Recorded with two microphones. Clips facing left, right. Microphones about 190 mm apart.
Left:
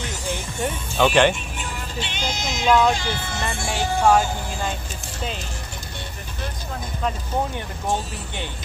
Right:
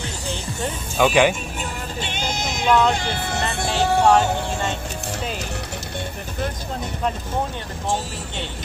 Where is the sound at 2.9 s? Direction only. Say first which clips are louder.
Right 1 dB; 60° right (ahead or behind).